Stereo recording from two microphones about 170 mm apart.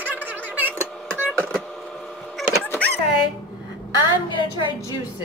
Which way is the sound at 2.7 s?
10° left (ahead or behind).